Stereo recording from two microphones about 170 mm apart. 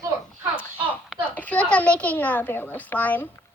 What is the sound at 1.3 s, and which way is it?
A woman's voice, 10° left (ahead or behind).